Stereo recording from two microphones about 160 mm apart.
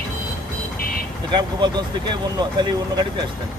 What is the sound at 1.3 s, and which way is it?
Speech, 30° right (ahead or behind).